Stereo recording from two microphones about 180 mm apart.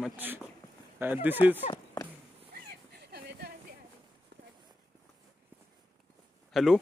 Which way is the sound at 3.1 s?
60° right (ahead or behind).